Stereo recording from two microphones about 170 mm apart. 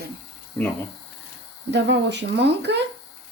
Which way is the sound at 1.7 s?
90° right.